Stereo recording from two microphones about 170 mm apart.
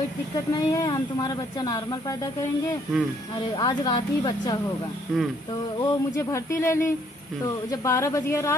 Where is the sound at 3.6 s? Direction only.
25° left (ahead or behind).